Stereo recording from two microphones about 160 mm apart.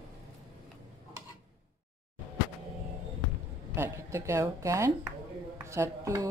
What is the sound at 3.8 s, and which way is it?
A woman's voice, 15° right (ahead or behind).